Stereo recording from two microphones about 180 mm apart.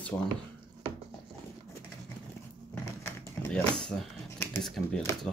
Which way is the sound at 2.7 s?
10° left (ahead or behind).